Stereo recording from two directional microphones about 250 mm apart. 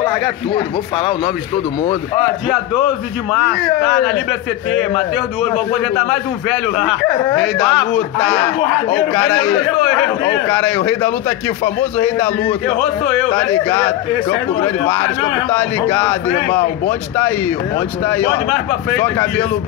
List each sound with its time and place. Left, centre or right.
4.0 s a man's voice: centre
17.7 s speech: centre